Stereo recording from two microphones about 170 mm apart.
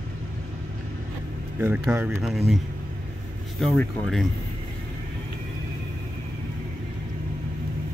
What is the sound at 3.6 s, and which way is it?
Speech, 5° left (ahead or behind).